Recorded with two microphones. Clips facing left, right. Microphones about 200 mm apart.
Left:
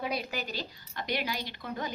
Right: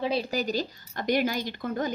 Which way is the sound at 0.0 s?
30° right (ahead or behind).